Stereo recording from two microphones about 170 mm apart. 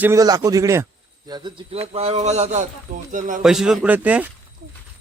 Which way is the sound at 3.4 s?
5° right (ahead or behind).